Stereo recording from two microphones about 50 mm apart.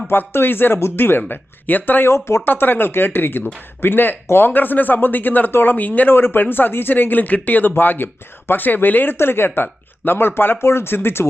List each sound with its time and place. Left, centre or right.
0.1 s speech: left
2.0 s speech: left
2.4 s speech: left
6.1 s speech: left
9.1 s speech: left